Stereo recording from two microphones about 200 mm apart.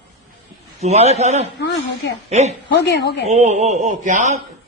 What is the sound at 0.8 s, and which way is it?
A man's voice, 35° right (ahead or behind).